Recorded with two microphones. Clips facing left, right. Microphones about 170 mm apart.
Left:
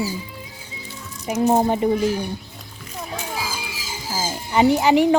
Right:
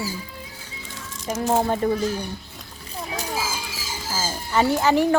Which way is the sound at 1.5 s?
15° left (ahead or behind).